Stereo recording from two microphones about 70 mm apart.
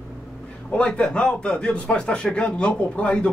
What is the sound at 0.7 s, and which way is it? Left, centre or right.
Speech, centre.